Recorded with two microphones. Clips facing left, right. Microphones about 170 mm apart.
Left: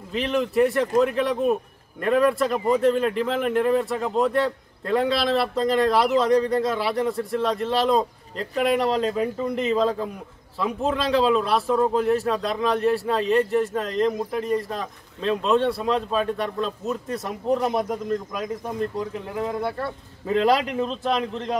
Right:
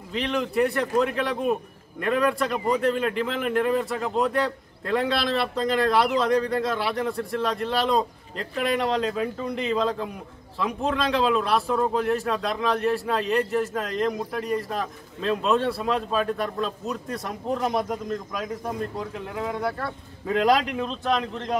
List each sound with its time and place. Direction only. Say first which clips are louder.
0.1 s a man's voice: left 3 dB; centre (ahead or behind)
18.9 s a man's voice: left 3 dB; centre (ahead or behind)